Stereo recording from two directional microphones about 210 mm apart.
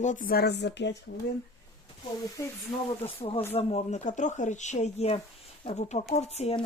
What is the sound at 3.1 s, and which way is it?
Speech, 25° left (ahead or behind).